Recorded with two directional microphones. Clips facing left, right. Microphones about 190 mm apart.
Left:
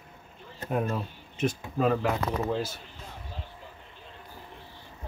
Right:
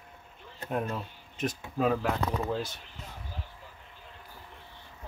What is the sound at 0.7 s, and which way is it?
Speech, 5° left (ahead or behind).